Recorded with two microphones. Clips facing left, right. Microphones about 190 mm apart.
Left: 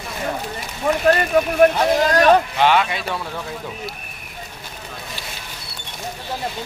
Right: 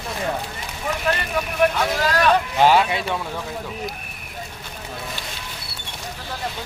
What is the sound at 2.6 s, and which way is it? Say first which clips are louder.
Speech: right 1 dB; 35° right (ahead or behind).